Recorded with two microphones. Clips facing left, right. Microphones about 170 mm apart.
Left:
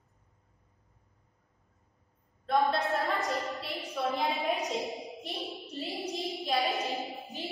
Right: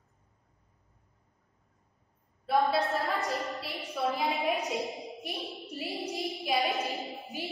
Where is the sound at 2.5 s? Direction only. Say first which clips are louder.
Right 1 dB; 10° right (ahead or behind).